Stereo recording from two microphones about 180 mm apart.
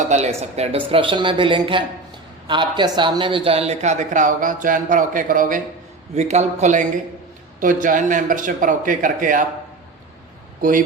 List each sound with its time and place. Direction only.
0.1 s speech: 35° right (ahead or behind)
10.6 s speech: 50° right (ahead or behind)